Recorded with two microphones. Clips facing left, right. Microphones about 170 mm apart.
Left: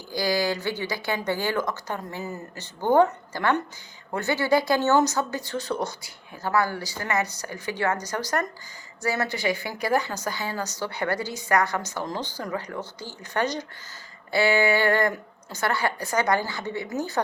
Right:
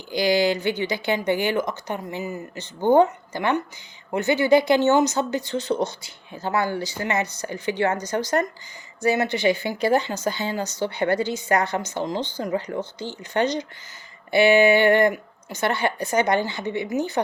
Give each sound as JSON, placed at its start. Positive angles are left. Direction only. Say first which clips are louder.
{"t": 0.1, "sound": "speech", "louder": "right 5 dB", "side_deg": -20}